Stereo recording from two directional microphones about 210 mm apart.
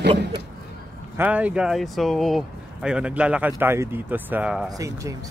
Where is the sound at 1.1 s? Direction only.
5° right (ahead or behind).